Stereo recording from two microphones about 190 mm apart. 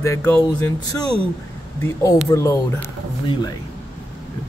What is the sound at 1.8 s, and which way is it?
Speech, 15° left (ahead or behind).